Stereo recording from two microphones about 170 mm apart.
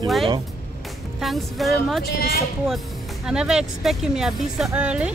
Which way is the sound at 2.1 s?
65° left (ahead or behind).